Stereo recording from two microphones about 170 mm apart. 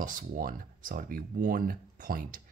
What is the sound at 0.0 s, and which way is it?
Speech, 55° right (ahead or behind).